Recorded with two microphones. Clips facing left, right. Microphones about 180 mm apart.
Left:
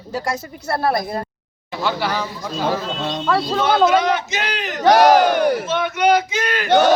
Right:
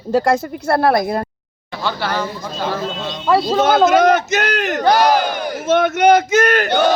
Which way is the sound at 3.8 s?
45° right (ahead or behind).